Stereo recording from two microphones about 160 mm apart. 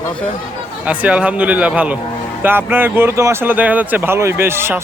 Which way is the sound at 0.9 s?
10° right (ahead or behind).